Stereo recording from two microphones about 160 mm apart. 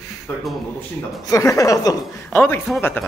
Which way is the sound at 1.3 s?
20° left (ahead or behind).